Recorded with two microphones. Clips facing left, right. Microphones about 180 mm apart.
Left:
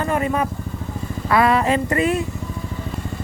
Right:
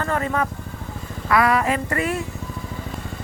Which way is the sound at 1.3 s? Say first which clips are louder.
Left 2 dB; 25° left (ahead or behind).